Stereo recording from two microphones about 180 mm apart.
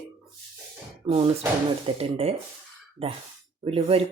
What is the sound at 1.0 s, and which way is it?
Speech, 30° right (ahead or behind).